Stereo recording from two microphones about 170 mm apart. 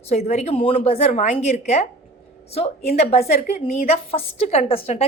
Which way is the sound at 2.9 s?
40° left (ahead or behind).